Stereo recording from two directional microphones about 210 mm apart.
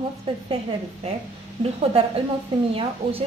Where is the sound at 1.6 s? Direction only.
30° right (ahead or behind).